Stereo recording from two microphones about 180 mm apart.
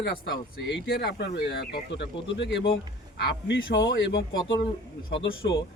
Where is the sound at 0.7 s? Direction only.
60° left (ahead or behind); by 4.5 s 90° left.